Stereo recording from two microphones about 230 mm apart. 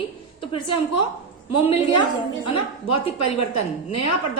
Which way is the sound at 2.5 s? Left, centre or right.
Left.